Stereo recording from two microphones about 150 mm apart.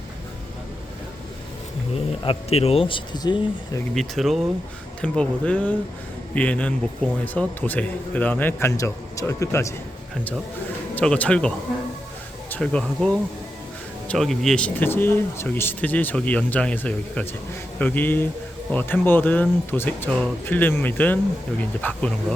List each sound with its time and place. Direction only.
2.2 s speech: 40° left (ahead or behind)
3.9 s a man's voice: centre (ahead or behind); by 9.6 s 20° left (ahead or behind)
10.9 s a man's voice: 10° left (ahead or behind)